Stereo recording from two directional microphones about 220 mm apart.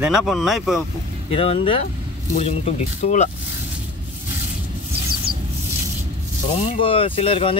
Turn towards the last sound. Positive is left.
turn(degrees=25)  # may be behind; listen again after turning